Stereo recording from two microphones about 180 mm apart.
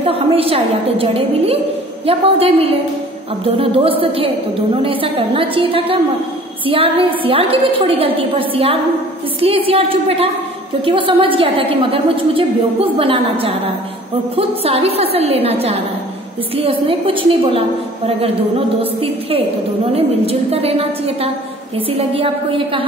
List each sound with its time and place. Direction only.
0.0 s a woman's voice: 30° right (ahead or behind)